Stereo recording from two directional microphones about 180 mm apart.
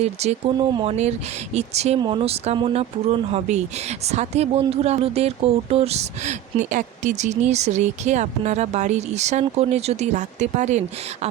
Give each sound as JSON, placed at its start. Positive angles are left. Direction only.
{"t": 0.0, "sound": "speech", "side_deg": -35}